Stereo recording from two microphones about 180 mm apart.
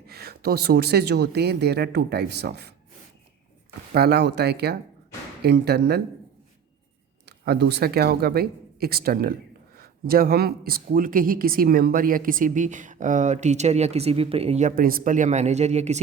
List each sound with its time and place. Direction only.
0.1 s speech: 60° right (ahead or behind)
3.9 s speech: 60° right (ahead or behind)
7.3 s speech: 65° right (ahead or behind); by 14.7 s 35° right (ahead or behind)
14.8 s speech: 55° right (ahead or behind)